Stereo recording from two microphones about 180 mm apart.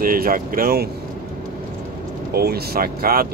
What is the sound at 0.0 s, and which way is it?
Speech, 50° right (ahead or behind).